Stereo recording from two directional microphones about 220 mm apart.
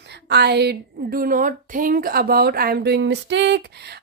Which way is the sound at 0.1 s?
50° right (ahead or behind).